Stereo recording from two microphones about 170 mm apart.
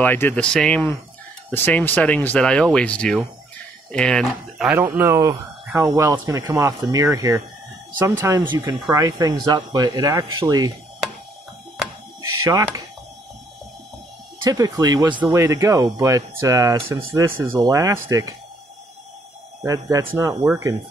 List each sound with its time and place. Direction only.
0.0 s speech: 10° left (ahead or behind)
4.7 s speech: 15° right (ahead or behind)
12.2 s a sound: 20° right (ahead or behind)
14.4 s speech: 20° right (ahead or behind)
19.6 s speech: 20° right (ahead or behind)